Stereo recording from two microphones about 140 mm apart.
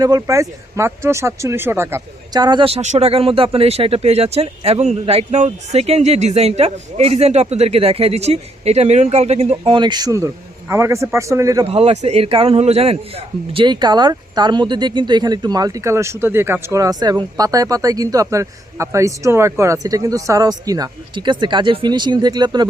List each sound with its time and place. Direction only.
0.0 s a man's voice: 25° right (ahead or behind)
2.3 s speech: 30° right (ahead or behind); by 9.6 s 50° right (ahead or behind)
9.6 s a man's voice: 35° right (ahead or behind)
11.6 s a man's voice: 45° right (ahead or behind)